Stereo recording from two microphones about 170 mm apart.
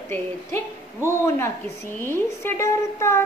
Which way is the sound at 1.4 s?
15° left (ahead or behind).